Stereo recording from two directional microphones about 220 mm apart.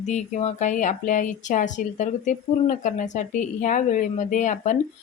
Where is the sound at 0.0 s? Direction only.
30° left (ahead or behind).